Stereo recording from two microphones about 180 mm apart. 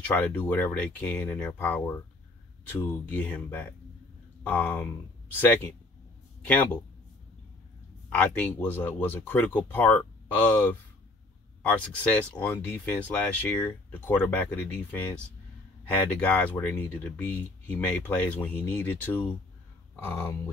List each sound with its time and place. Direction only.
0.1 s speech: 10° left (ahead or behind)
8.1 s speech: 10° left (ahead or behind)